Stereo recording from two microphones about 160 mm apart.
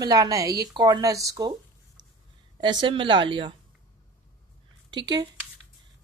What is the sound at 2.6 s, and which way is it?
Speech, 30° right (ahead or behind).